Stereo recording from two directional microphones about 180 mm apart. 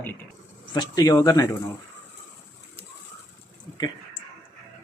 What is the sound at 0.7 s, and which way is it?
Speech, 20° left (ahead or behind).